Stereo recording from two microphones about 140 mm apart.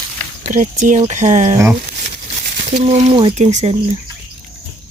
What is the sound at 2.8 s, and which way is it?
Speech, 55° right (ahead or behind).